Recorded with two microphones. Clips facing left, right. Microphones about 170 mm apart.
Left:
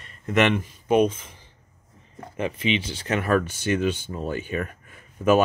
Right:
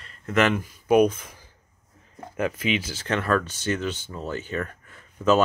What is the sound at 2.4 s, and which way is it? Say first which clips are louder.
Speech: even; 45° right (ahead or behind).